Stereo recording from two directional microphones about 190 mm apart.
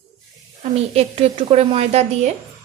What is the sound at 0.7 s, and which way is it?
Speech, 30° right (ahead or behind).